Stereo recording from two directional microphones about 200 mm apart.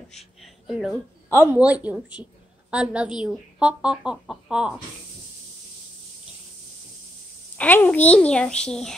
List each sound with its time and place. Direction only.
0.4 s a sound: centre (ahead or behind)
1.3 s speech: 15° right (ahead or behind)
7.5 s speech: 10° left (ahead or behind)